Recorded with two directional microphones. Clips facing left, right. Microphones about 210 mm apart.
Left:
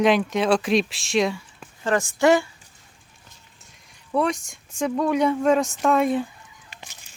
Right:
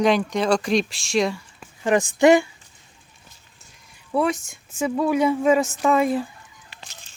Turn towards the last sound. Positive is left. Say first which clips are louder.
# right 1 dB
turn(degrees=0)  # may be behind; listen again after turning